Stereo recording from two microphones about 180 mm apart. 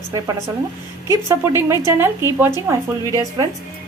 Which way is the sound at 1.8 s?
15° right (ahead or behind).